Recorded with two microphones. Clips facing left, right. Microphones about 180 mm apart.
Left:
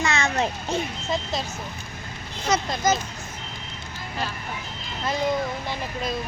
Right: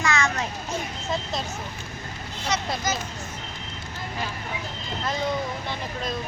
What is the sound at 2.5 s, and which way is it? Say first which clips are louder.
Speech: left 5 dB; 45° left (ahead or behind).